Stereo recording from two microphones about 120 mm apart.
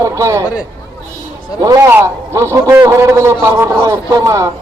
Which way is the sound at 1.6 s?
30° right (ahead or behind).